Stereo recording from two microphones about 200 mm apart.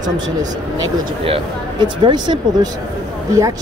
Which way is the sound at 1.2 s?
25° right (ahead or behind).